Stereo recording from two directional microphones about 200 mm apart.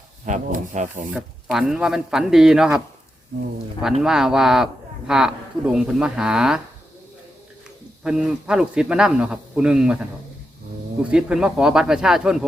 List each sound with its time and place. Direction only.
0.3 s speech: 40° right (ahead or behind)
1.1 s a man's voice: centre (ahead or behind)
4.0 s a man's voice: 5° right (ahead or behind)
8.0 s a man's voice: 5° right (ahead or behind)
11.1 s a man's voice: 5° right (ahead or behind)